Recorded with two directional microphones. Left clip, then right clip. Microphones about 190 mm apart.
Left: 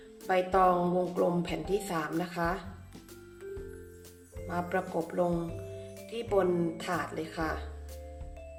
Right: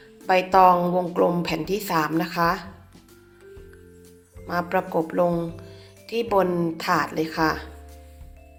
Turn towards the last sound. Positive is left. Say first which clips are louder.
# right 11 dB
turn(degrees=-15)  # may be behind; listen again after turning